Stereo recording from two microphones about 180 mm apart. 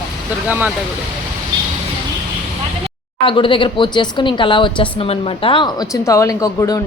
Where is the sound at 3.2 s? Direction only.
30° left (ahead or behind).